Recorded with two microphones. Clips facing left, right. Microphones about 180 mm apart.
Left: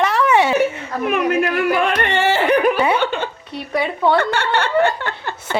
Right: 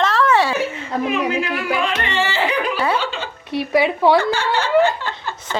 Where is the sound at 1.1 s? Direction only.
60° left (ahead or behind).